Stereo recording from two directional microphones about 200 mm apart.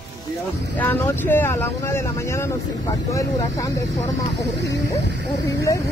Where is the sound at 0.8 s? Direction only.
10° left (ahead or behind).